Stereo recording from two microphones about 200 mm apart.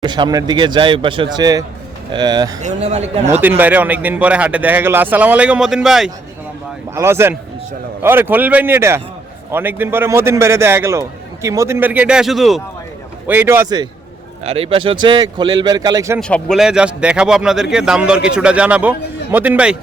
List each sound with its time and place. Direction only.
0.0 s speech: 20° right (ahead or behind)
2.6 s speech: 35° right (ahead or behind)
3.4 s speech: 10° right (ahead or behind)
14.4 s speech: 30° right (ahead or behind)
16.2 s speech: 5° left (ahead or behind)